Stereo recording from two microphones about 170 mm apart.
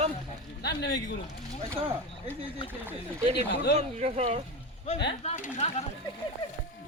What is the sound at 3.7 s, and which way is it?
Speech, 40° right (ahead or behind).